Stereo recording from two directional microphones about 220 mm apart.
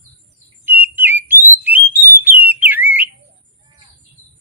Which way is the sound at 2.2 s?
10° right (ahead or behind).